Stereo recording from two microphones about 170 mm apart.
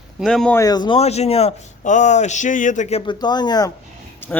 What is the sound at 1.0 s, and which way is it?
A man's voice, 40° left (ahead or behind).